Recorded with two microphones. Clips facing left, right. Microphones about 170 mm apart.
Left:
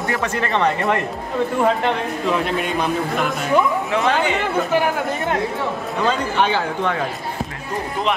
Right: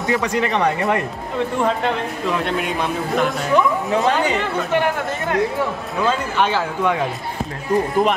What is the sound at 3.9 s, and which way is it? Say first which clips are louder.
Speech: right 1 dB; 40° right (ahead or behind).